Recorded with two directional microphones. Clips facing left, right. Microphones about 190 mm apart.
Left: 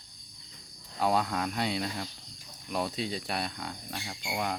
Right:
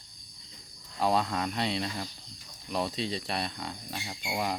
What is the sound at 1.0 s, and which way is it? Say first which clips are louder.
Speech: even; centre (ahead or behind).